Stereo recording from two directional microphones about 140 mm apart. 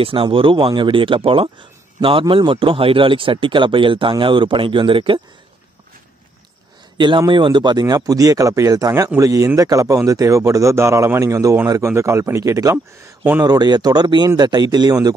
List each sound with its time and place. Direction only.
0.0 s speech: 40° right (ahead or behind)
7.0 s a man's voice: 35° right (ahead or behind)
12.7 s speech: 10° right (ahead or behind)
13.4 s a man's voice: 30° right (ahead or behind)